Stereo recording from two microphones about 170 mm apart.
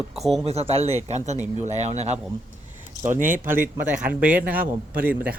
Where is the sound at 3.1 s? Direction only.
50° right (ahead or behind).